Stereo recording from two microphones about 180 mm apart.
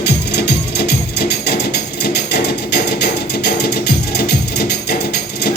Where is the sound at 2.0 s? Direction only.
65° left (ahead or behind).